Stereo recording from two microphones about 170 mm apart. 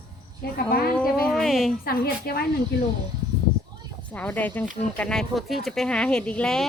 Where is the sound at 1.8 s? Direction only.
65° left (ahead or behind).